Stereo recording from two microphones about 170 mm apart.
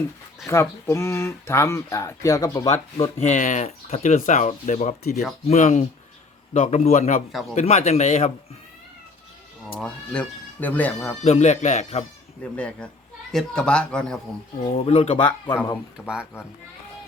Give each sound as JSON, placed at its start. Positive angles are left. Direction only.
{"t": 0.4, "sound": "speech", "side_deg": 15}
{"t": 3.0, "sound": "speech", "side_deg": 45}
{"t": 9.8, "sound": "speech", "side_deg": 5}
{"t": 11.2, "sound": "speech", "side_deg": 40}
{"t": 12.5, "sound": "speech", "side_deg": 5}
{"t": 14.6, "sound": "speech", "side_deg": 35}
{"t": 16.0, "sound": "speech", "side_deg": -5}